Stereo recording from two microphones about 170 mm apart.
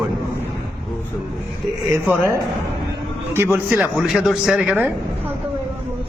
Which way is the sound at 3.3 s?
15° right (ahead or behind).